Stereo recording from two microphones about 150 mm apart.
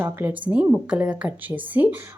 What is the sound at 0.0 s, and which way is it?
A woman's voice, 15° right (ahead or behind).